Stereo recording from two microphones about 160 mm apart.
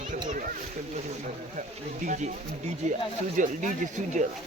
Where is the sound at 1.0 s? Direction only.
50° right (ahead or behind).